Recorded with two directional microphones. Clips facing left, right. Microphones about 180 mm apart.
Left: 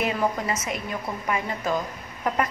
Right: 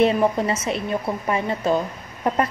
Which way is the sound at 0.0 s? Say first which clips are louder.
Right 7 dB; 30° right (ahead or behind).